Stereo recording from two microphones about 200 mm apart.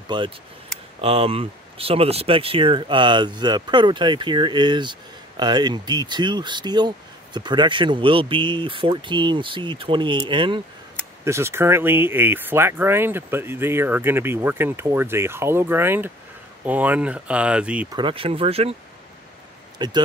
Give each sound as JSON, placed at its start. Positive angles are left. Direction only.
{"t": 0.1, "sound": "speech", "side_deg": -20}
{"t": 11.2, "sound": "speech", "side_deg": -15}
{"t": 17.9, "sound": "speech", "side_deg": -25}
{"t": 19.8, "sound": "speech", "side_deg": -20}